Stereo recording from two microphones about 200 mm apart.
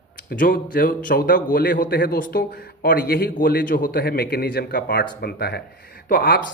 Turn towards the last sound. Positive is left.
turn(degrees=45)  # may be behind; listen again after turning